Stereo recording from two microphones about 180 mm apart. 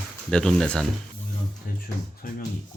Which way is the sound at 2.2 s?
50° left (ahead or behind).